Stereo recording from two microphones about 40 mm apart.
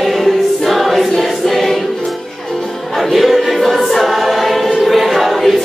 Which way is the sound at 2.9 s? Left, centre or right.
Centre.